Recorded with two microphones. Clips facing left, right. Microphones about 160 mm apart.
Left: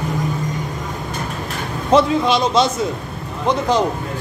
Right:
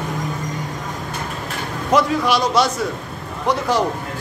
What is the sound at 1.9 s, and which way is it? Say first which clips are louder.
A man's voice: left 3 dB; 25° left (ahead or behind).